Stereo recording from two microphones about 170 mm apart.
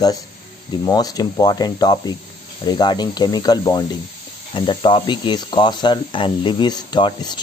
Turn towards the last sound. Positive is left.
turn(degrees=25)  # may be behind; listen again after turning